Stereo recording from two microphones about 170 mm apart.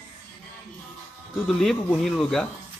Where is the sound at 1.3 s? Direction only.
Centre (ahead or behind).